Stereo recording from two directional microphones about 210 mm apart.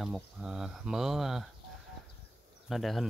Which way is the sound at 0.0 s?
5° right (ahead or behind).